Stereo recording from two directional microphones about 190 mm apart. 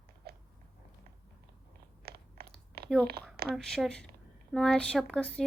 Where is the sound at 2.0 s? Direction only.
55° right (ahead or behind).